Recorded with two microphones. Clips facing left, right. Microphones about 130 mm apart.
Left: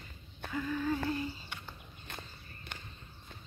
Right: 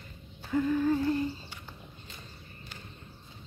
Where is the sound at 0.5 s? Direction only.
25° right (ahead or behind).